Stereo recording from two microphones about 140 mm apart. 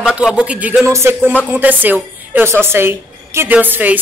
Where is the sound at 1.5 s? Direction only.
10° right (ahead or behind).